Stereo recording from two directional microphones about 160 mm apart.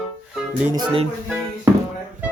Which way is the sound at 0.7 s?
35° right (ahead or behind).